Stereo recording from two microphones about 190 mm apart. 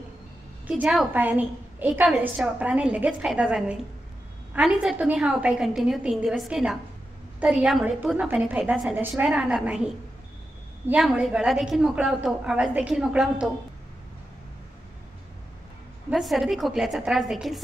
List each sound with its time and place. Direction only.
0.7 s a woman's voice: 5° right (ahead or behind)
10.9 s a woman's voice: 5° right (ahead or behind)
16.1 s a woman's voice: centre (ahead or behind)